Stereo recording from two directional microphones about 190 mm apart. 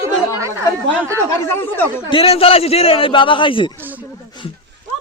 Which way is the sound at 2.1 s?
30° left (ahead or behind).